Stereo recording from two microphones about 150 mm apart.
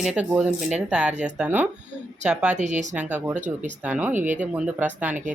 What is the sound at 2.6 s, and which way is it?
Speech, 55° right (ahead or behind).